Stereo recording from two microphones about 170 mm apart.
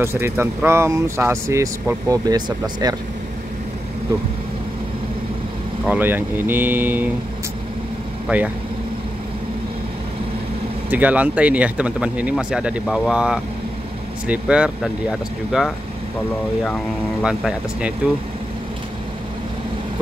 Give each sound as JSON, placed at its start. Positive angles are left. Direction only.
{"t": 0.0, "sound": "speech", "side_deg": -15}
{"t": 5.9, "sound": "speech", "side_deg": -10}
{"t": 8.3, "sound": "speech", "side_deg": -10}
{"t": 10.9, "sound": "speech", "side_deg": -10}
{"t": 17.2, "sound": "speech", "side_deg": -5}